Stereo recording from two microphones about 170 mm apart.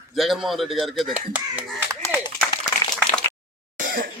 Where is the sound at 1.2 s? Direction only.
10° right (ahead or behind).